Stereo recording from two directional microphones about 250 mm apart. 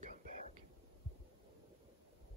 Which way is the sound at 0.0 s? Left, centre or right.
Right.